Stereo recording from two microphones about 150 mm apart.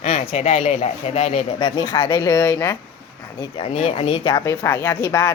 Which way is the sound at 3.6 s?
40° left (ahead or behind).